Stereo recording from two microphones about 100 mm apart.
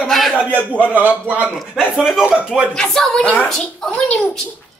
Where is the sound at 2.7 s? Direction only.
5° left (ahead or behind).